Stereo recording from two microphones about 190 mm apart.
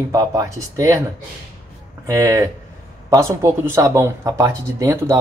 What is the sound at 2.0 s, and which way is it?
Speech, 15° right (ahead or behind).